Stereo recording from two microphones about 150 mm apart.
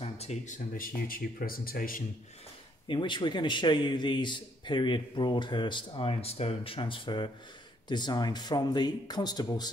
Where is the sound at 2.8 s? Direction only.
30° left (ahead or behind).